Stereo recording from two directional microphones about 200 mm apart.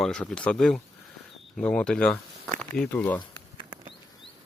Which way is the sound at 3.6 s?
20° right (ahead or behind).